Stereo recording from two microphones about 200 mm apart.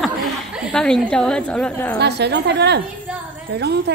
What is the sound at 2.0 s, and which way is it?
A woman's voice, 55° right (ahead or behind).